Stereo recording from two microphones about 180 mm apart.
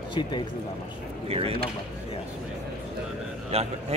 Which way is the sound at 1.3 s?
30° right (ahead or behind).